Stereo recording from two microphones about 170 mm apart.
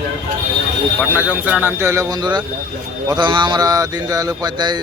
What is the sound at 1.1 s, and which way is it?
Speech, 10° right (ahead or behind).